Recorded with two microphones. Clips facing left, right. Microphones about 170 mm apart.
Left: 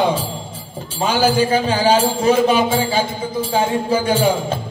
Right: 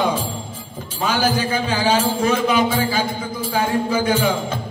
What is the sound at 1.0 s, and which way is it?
A man's voice, 30° left (ahead or behind).